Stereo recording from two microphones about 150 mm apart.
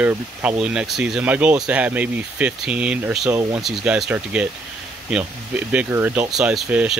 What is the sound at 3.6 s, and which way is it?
Speech, centre (ahead or behind).